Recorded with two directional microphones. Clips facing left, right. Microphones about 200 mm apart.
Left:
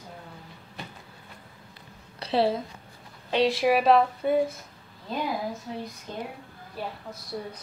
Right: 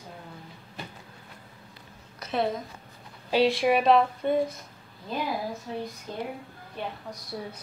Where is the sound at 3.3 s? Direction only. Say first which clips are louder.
Even; centre (ahead or behind).